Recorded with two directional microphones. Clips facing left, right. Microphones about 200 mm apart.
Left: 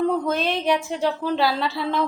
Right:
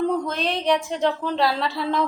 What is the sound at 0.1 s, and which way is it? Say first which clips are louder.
A woman's voice: left 2 dB; centre (ahead or behind).